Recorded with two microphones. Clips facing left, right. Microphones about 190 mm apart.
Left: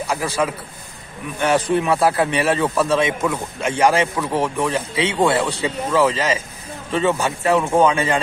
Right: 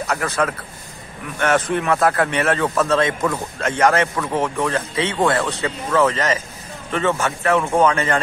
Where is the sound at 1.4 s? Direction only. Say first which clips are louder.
Left 1 dB; 15° left (ahead or behind).